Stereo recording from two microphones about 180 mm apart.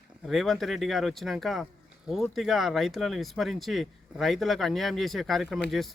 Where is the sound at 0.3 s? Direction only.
Centre (ahead or behind).